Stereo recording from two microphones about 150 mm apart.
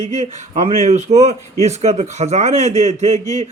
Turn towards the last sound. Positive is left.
turn(degrees=-50)  # may be behind; listen again after turning